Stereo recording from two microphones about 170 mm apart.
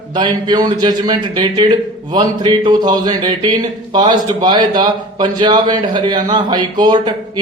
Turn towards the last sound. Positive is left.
turn(degrees=-25)  # may be behind; listen again after turning